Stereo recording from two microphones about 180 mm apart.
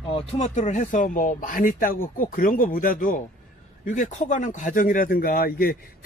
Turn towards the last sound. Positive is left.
turn(degrees=55)  # may be behind; listen again after turning